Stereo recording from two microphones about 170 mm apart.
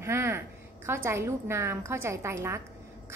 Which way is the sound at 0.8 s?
15° right (ahead or behind).